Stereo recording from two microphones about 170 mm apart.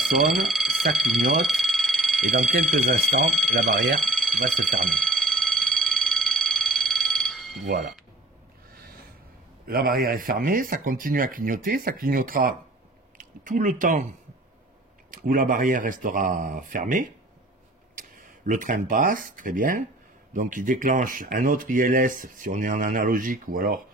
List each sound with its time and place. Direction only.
0.0 s speech: centre (ahead or behind)
4.0 s alarm: centre (ahead or behind)
9.7 s speech: 60° right (ahead or behind)
15.0 s speech: 55° right (ahead or behind)